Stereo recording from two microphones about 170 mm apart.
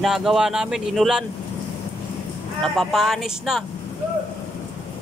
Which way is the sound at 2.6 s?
Centre (ahead or behind).